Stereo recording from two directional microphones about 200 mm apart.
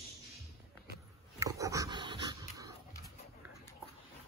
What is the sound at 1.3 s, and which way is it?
Dog, 15° right (ahead or behind).